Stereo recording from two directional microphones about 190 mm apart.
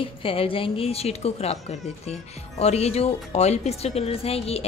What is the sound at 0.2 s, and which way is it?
A woman's voice, 30° left (ahead or behind).